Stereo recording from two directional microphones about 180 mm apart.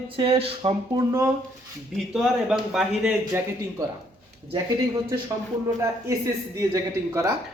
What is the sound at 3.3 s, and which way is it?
Speech, 15° right (ahead or behind).